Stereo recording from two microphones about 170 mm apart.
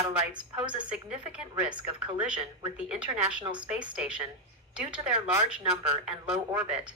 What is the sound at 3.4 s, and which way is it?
Speech, 30° right (ahead or behind).